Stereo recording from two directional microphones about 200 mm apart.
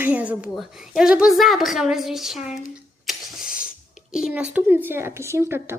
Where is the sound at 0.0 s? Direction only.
5° right (ahead or behind).